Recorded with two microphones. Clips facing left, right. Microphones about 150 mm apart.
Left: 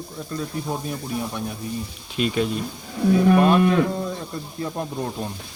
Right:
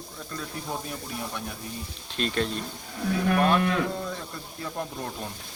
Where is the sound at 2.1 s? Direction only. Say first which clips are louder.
Left 5 dB; 10° left (ahead or behind).